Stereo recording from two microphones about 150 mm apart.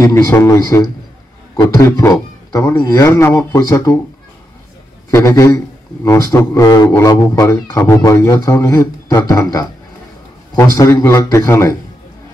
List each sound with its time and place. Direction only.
0.0 s a man's voice: 20° left (ahead or behind)
1.9 s a man's voice: 20° left (ahead or behind)
5.1 s a man's voice: 20° left (ahead or behind)